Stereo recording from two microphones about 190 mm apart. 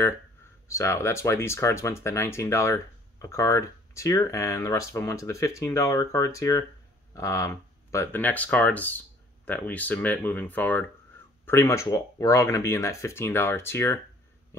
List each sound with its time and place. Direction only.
0.7 s speech: 15° left (ahead or behind)